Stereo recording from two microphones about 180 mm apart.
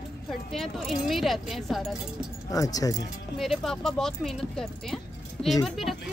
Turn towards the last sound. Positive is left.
turn(degrees=0)  # may be behind; listen again after turning